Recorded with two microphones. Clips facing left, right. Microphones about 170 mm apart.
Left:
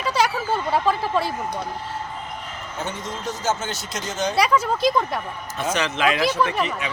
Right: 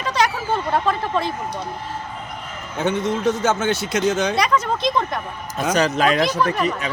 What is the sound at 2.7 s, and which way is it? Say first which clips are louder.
Speech: right 10 dB; 60° right (ahead or behind).